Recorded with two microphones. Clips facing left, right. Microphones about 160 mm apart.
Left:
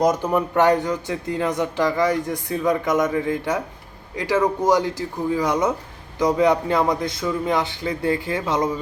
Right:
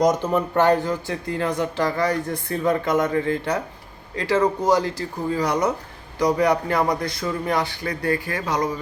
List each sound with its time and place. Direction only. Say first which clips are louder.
0.0 s a man's voice: even; 15° left (ahead or behind)